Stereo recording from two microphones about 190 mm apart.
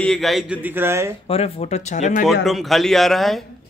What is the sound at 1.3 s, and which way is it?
Speech, 30° left (ahead or behind).